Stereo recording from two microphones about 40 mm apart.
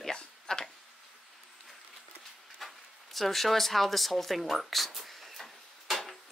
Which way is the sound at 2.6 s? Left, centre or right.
Centre.